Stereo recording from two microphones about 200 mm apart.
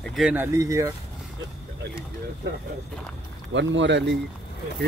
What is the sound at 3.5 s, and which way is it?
Speech, 65° right (ahead or behind).